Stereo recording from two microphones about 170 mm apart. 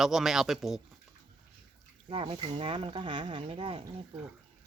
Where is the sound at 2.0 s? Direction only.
35° right (ahead or behind).